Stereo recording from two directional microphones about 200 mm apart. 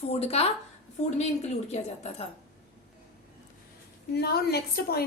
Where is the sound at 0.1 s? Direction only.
30° left (ahead or behind).